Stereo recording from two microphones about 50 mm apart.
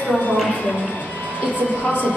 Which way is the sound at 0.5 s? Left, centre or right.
Left.